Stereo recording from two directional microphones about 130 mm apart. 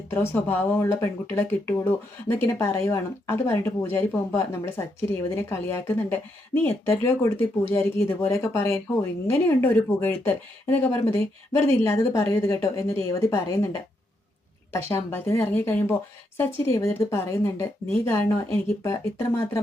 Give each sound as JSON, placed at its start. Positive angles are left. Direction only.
{"t": 0.1, "sound": "speech", "side_deg": 20}
{"t": 14.7, "sound": "speech", "side_deg": 20}